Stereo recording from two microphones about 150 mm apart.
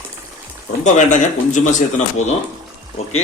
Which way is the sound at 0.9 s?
55° left (ahead or behind).